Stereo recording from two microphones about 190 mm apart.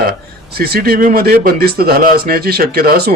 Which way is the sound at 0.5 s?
55° right (ahead or behind).